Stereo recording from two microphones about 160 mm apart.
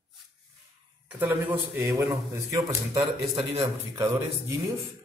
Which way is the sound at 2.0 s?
30° right (ahead or behind).